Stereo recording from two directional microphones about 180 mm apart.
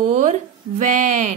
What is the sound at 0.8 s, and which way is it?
Speech, 45° right (ahead or behind).